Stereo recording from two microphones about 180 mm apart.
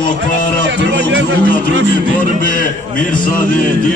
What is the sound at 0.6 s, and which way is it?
Speech, 90° right.